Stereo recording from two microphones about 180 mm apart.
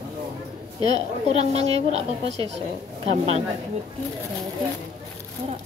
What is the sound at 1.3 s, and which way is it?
Speech, 35° right (ahead or behind).